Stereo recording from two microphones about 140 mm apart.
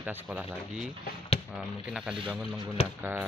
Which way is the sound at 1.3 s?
45° left (ahead or behind).